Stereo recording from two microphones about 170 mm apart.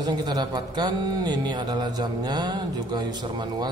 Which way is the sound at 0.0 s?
25° right (ahead or behind).